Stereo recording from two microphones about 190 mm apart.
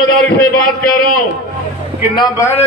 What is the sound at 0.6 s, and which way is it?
Speech, 50° left (ahead or behind).